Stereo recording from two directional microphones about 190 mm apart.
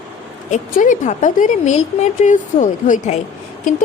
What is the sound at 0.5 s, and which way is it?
Speech, 45° left (ahead or behind).